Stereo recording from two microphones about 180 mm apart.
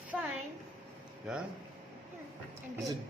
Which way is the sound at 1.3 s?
5° right (ahead or behind).